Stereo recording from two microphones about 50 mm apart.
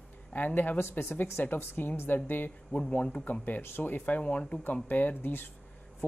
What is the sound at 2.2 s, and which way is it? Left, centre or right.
Speech, left.